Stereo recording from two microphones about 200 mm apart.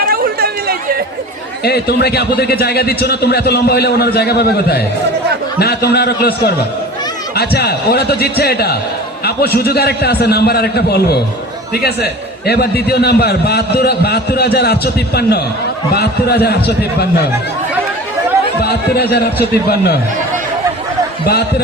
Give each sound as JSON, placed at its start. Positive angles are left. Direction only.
{"t": 0.0, "sound": "chatter", "side_deg": -50}
{"t": 1.6, "sound": "a man's voice", "side_deg": 55}
{"t": 18.6, "sound": "a man's voice", "side_deg": 55}